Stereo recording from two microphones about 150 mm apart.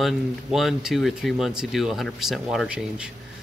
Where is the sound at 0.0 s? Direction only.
Centre (ahead or behind).